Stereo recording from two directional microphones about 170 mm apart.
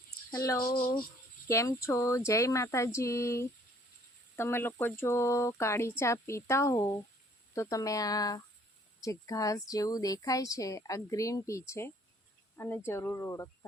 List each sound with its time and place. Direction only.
0.3 s a woman's voice: 20° left (ahead or behind)